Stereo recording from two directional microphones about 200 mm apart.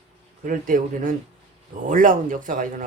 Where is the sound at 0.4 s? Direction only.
40° right (ahead or behind).